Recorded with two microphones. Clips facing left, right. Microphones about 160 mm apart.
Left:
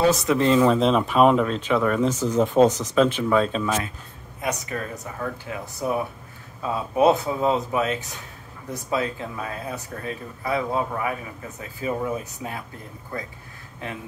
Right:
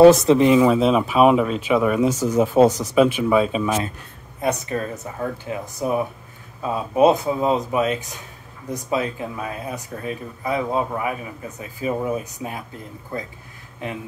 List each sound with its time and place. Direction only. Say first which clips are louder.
0.4 s speech: right 3 dB; 10° right (ahead or behind)
4.4 s speech: right 5 dB; 30° right (ahead or behind)